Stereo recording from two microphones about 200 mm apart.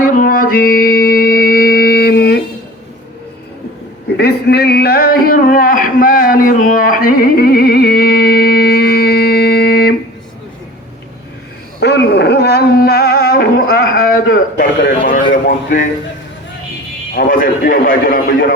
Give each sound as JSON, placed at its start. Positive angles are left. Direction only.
{"t": 0.0, "sound": "music", "side_deg": 45}
{"t": 4.2, "sound": "a sound", "side_deg": 55}
{"t": 11.8, "sound": "music", "side_deg": 60}
{"t": 14.6, "sound": "a man's voice", "side_deg": 45}
{"t": 15.3, "sound": "a sound", "side_deg": 40}
{"t": 17.2, "sound": "a man's voice", "side_deg": 45}